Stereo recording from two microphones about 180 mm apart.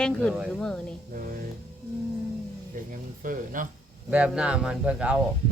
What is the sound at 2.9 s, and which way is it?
Speech, 50° right (ahead or behind).